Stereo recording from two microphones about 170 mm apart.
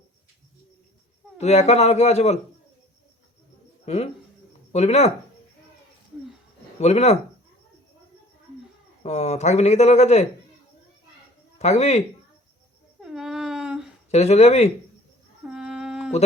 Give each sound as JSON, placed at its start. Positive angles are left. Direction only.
{"t": 1.4, "sound": "speech", "side_deg": 40}
{"t": 3.8, "sound": "speech", "side_deg": 40}
{"t": 6.7, "sound": "speech", "side_deg": 40}
{"t": 9.0, "sound": "speech", "side_deg": 40}
{"t": 11.6, "sound": "speech", "side_deg": 40}
{"t": 13.0, "sound": "a sound", "side_deg": -5}
{"t": 14.1, "sound": "speech", "side_deg": 40}
{"t": 15.4, "sound": "humming", "side_deg": -5}